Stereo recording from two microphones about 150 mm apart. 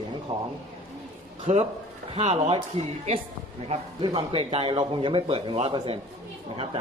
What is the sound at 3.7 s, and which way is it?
A man's voice, 40° right (ahead or behind).